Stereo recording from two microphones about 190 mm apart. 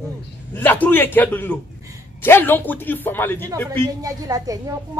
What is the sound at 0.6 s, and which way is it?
A man's voice, 10° left (ahead or behind).